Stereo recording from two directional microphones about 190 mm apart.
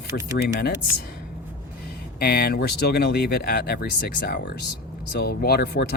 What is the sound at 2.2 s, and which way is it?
Speech, 55° left (ahead or behind).